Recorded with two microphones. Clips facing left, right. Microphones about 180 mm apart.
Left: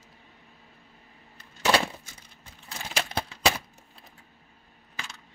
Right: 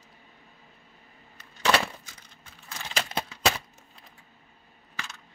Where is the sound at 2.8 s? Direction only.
5° left (ahead or behind).